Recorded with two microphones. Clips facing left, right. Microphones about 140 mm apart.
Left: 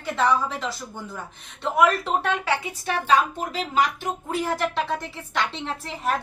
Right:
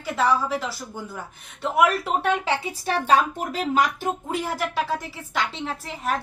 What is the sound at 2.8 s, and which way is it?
A woman's voice, 35° right (ahead or behind).